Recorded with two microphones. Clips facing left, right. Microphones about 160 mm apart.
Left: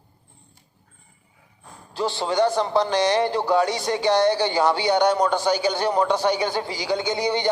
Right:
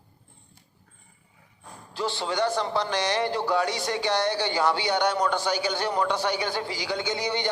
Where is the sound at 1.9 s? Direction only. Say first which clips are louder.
Left 5 dB; 35° left (ahead or behind).